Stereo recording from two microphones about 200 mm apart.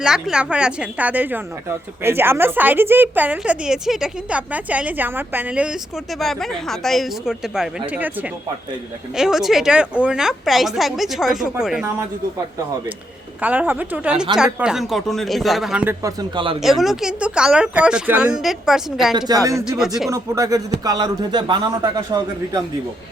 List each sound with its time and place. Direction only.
0.0 s speech: 5° right (ahead or behind)
13.4 s speech: 10° right (ahead or behind)
16.3 s a man's voice: 25° right (ahead or behind)
16.6 s speech: centre (ahead or behind)
19.1 s a man's voice: 15° right (ahead or behind)